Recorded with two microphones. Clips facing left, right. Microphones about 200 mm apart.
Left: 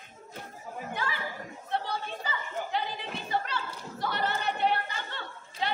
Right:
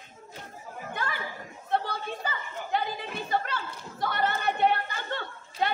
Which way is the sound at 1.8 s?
55° right (ahead or behind).